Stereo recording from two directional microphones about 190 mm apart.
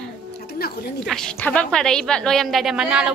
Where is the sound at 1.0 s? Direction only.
Centre (ahead or behind).